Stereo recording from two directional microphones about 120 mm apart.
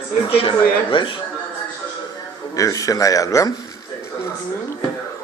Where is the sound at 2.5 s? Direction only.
30° left (ahead or behind).